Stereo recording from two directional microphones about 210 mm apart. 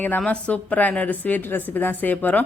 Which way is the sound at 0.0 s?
5° left (ahead or behind).